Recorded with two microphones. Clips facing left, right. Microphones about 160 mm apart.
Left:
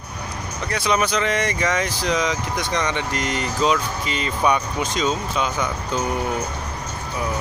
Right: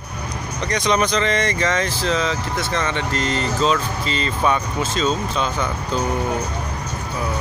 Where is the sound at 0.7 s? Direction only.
5° left (ahead or behind).